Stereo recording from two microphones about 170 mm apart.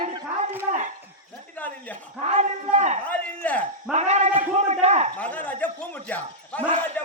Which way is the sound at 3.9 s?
40° right (ahead or behind).